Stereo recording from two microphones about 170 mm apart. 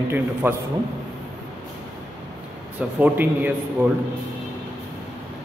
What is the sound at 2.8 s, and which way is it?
A man's voice, 10° right (ahead or behind).